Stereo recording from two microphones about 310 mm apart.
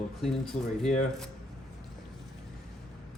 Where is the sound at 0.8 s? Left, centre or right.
Centre.